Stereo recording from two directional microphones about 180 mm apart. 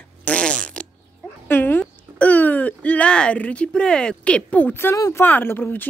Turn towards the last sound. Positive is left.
turn(degrees=10)  # may be behind; listen again after turning